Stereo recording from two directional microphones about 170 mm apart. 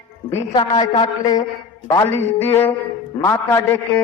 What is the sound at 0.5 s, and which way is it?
A man's voice, 25° left (ahead or behind).